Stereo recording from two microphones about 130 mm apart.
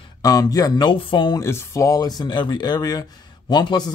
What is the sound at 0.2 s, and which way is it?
Speech, 30° left (ahead or behind).